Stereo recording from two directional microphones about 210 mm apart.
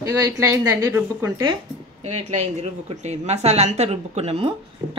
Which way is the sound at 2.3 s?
30° right (ahead or behind).